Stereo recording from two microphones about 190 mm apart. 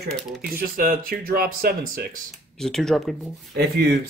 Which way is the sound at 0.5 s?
50° right (ahead or behind).